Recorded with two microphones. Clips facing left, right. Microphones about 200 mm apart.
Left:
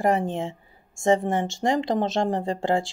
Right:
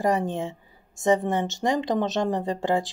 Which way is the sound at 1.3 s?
20° right (ahead or behind).